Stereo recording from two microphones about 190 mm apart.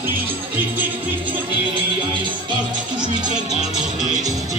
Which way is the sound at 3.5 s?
35° left (ahead or behind).